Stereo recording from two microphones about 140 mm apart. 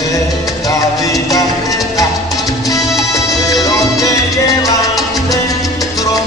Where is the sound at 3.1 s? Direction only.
25° left (ahead or behind).